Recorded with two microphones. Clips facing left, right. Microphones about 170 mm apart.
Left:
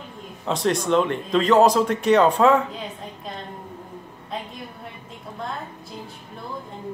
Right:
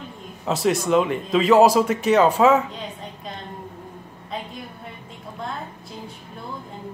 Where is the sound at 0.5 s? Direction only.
5° right (ahead or behind).